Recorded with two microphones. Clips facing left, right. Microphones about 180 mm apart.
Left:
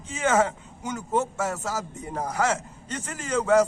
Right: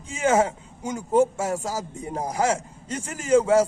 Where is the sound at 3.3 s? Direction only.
30° right (ahead or behind).